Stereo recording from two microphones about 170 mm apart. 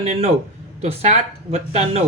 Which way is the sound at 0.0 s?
40° right (ahead or behind).